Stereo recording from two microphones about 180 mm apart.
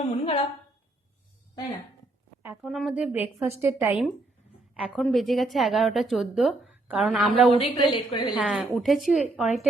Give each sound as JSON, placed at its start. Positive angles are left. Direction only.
{"t": 0.0, "sound": "a woman's voice", "side_deg": 30}
{"t": 2.6, "sound": "a woman's voice", "side_deg": 0}
{"t": 4.7, "sound": "a woman's voice", "side_deg": 0}
{"t": 7.5, "sound": "a woman's voice", "side_deg": 30}
{"t": 8.4, "sound": "a woman's voice", "side_deg": -5}